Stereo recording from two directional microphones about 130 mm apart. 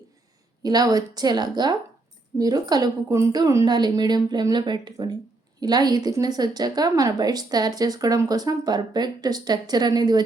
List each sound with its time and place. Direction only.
0.6 s a woman's voice: 30° right (ahead or behind)